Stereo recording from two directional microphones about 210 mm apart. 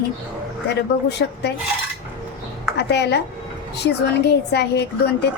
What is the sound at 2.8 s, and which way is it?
A woman's voice, 55° left (ahead or behind).